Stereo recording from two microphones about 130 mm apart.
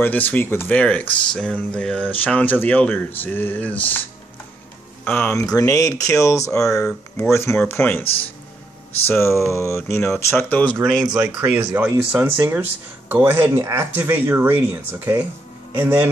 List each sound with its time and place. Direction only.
0.0 s speech: 15° left (ahead or behind)
5.3 s speech: 25° left (ahead or behind)
9.0 s speech: 20° left (ahead or behind)
11.4 s a man's voice: 15° right (ahead or behind)